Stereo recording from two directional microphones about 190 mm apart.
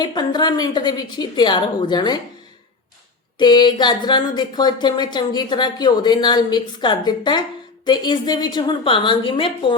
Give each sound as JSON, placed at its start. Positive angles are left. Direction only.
{"t": 0.0, "sound": "speech", "side_deg": 25}
{"t": 3.3, "sound": "speech", "side_deg": 25}